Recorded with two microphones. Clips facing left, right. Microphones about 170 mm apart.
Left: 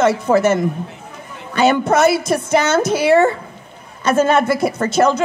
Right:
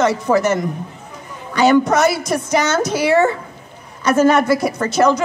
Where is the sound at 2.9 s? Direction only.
25° left (ahead or behind).